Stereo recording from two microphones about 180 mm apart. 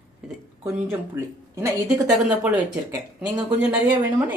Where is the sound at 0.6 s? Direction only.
15° right (ahead or behind).